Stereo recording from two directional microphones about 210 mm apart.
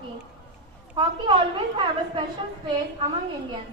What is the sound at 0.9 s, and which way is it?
A woman's voice, 20° right (ahead or behind).